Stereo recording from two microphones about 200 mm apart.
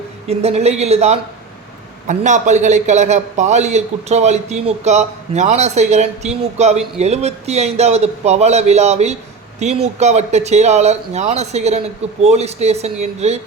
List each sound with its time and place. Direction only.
0.3 s a man's voice: 30° right (ahead or behind)